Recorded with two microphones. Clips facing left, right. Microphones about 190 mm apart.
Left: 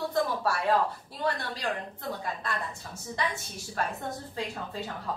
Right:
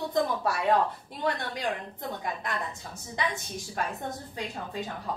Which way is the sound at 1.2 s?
20° right (ahead or behind).